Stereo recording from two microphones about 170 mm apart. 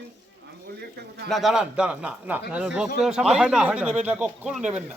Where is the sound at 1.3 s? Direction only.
Centre (ahead or behind).